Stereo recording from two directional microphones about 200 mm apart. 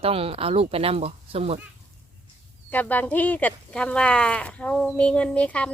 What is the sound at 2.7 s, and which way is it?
Speech, 10° left (ahead or behind).